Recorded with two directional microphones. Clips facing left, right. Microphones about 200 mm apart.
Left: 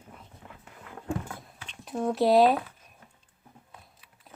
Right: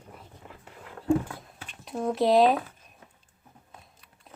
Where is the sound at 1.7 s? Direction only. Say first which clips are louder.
Even; centre (ahead or behind).